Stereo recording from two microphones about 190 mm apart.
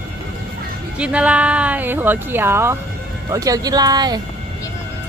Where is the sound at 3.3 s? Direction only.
20° right (ahead or behind).